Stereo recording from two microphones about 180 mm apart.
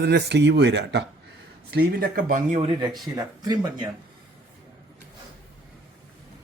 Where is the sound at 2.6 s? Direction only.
30° right (ahead or behind).